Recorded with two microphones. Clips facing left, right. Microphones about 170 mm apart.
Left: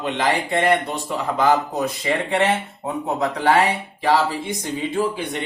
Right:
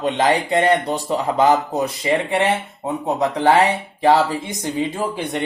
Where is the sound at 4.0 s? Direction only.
45° right (ahead or behind).